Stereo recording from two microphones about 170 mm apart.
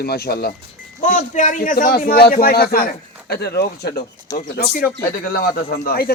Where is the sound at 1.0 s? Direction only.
45° left (ahead or behind); by 4.0 s 70° left (ahead or behind).